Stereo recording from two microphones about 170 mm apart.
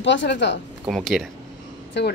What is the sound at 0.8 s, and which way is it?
Speech, centre (ahead or behind).